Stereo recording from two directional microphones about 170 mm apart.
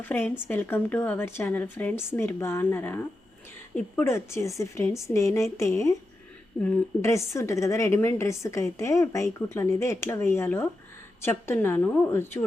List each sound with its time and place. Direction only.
0.0 s a woman's voice: 10° left (ahead or behind)